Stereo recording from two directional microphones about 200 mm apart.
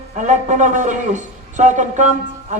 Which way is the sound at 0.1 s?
40° right (ahead or behind).